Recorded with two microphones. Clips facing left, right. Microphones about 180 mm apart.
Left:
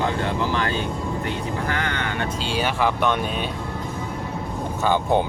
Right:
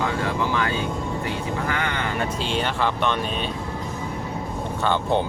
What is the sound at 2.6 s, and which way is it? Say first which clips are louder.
Speech: left 3 dB; 10° left (ahead or behind).